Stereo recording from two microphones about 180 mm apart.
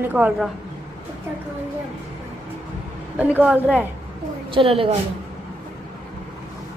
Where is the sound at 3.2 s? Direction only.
10° right (ahead or behind).